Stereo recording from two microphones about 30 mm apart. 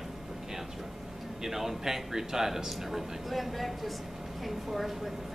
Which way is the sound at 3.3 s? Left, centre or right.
Centre.